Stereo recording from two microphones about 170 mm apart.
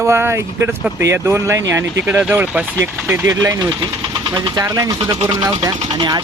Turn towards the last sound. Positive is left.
turn(degrees=-25)  # may be behind; listen again after turning